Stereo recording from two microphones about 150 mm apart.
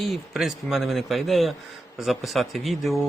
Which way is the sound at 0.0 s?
Centre (ahead or behind).